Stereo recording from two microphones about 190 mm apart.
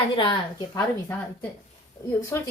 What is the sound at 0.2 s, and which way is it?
Speech, 25° left (ahead or behind).